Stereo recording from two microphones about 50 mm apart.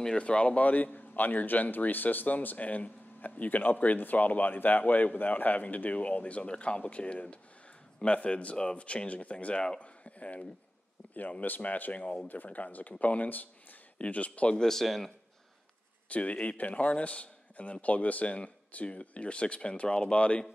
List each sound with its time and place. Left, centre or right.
0.0 s a man's voice: left
14.6 s speech: centre
16.1 s speech: left